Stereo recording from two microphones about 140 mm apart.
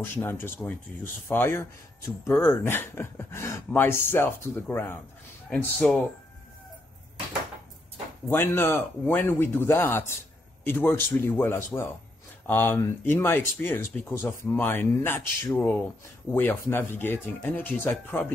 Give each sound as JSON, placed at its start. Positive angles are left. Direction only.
{"t": 0.0, "sound": "speech", "side_deg": 15}
{"t": 5.5, "sound": "speech", "side_deg": 5}
{"t": 8.3, "sound": "speech", "side_deg": 15}